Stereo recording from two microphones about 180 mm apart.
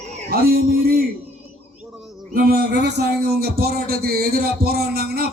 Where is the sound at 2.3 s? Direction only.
55° right (ahead or behind).